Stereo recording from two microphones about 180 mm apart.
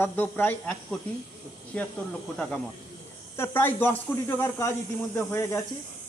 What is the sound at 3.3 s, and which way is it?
Speech, 10° left (ahead or behind).